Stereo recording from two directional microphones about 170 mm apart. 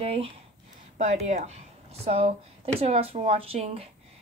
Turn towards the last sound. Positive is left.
turn(degrees=-35)  # may be behind; listen again after turning